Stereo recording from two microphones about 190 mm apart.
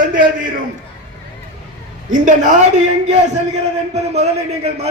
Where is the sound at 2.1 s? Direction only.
40° right (ahead or behind).